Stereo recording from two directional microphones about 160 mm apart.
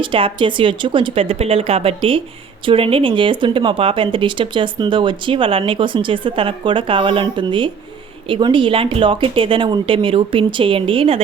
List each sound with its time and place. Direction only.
0.0 s speech: 35° right (ahead or behind)